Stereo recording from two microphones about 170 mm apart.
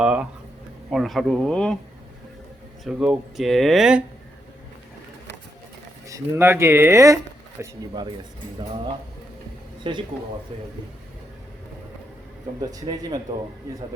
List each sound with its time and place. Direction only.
0.0 s speech: 5° right (ahead or behind)
2.8 s speech: 5° right (ahead or behind)
6.1 s speech: 15° right (ahead or behind)
9.8 s speech: 30° right (ahead or behind)
12.5 s speech: 20° right (ahead or behind)